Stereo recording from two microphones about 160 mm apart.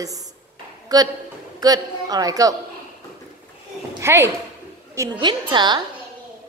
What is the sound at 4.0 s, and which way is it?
A woman's voice, 15° right (ahead or behind).